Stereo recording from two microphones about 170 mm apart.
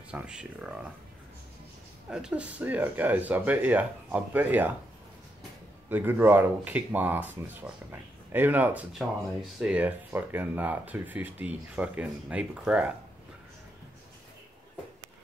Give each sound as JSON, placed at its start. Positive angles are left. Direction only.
{"t": 0.1, "sound": "speech", "side_deg": -5}
{"t": 2.0, "sound": "speech", "side_deg": -5}
{"t": 5.9, "sound": "speech", "side_deg": -10}